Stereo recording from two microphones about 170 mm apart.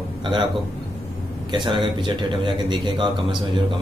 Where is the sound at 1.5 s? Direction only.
30° right (ahead or behind).